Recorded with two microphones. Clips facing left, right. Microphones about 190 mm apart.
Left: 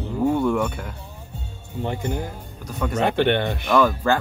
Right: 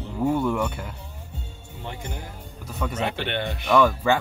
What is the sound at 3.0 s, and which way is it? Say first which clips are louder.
Speech: left 9 dB; 55° left (ahead or behind).